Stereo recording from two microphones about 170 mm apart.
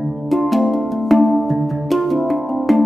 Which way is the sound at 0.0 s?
5° right (ahead or behind).